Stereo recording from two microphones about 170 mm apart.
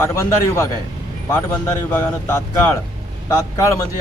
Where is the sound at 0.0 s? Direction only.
20° left (ahead or behind).